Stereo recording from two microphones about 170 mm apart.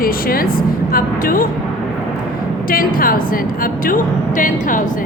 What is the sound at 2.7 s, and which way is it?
A woman's voice, 55° left (ahead or behind).